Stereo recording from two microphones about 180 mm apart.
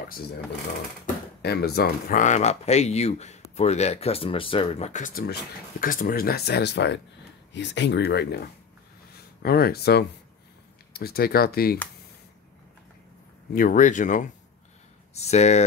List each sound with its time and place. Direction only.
1.4 s speech: 65° left (ahead or behind)
13.6 s speech: 45° left (ahead or behind)